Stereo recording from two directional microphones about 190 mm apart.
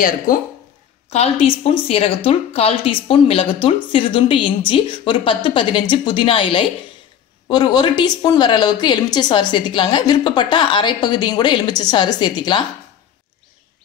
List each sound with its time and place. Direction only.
0.3 s speech: 45° left (ahead or behind)
1.1 s a woman's voice: 35° left (ahead or behind)